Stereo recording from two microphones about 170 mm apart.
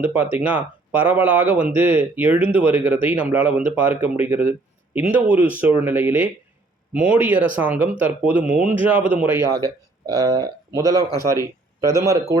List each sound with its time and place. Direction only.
0.0 s speech: 10° right (ahead or behind)